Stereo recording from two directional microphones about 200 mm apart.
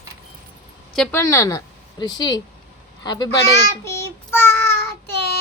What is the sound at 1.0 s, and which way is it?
A woman's voice, 10° left (ahead or behind).